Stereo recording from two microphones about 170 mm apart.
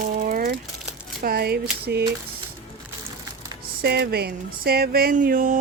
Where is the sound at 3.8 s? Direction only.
70° right (ahead or behind).